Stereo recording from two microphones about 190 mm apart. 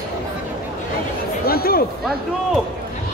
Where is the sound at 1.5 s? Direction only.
50° left (ahead or behind).